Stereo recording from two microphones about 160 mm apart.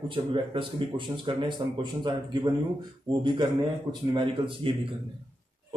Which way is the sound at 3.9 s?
30° right (ahead or behind).